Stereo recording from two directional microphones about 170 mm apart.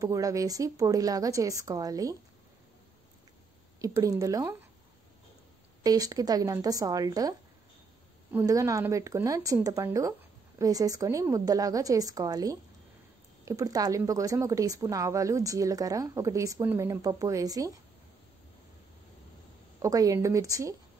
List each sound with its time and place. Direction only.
0.0 s speech: 20° right (ahead or behind)
3.8 s speech: 20° right (ahead or behind)
5.9 s speech: 20° right (ahead or behind)
19.8 s speech: 20° right (ahead or behind)